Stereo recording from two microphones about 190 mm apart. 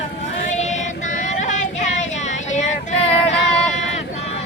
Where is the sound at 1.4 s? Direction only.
40° left (ahead or behind).